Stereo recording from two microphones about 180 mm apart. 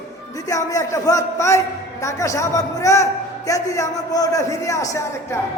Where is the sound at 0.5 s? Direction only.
20° left (ahead or behind).